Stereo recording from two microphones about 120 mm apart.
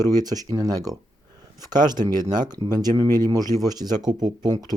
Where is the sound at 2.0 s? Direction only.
35° right (ahead or behind).